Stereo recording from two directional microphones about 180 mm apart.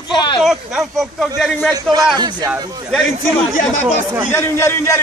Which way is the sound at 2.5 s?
Centre (ahead or behind).